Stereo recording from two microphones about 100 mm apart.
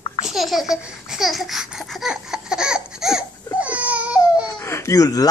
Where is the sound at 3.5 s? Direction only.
15° right (ahead or behind).